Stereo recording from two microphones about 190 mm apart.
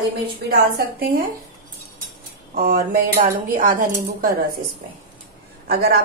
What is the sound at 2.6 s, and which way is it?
Speech, 50° right (ahead or behind).